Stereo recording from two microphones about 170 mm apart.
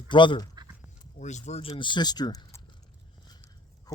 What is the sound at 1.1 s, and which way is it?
Speech, 45° left (ahead or behind).